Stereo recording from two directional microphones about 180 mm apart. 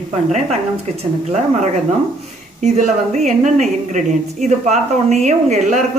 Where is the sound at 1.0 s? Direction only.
40° right (ahead or behind).